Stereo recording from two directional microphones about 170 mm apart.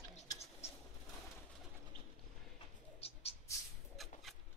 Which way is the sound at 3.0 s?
35° left (ahead or behind).